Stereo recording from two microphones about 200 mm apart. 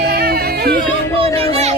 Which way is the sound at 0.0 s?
50° right (ahead or behind).